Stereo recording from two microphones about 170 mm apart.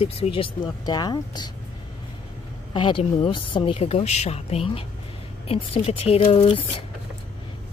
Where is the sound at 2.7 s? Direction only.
30° left (ahead or behind).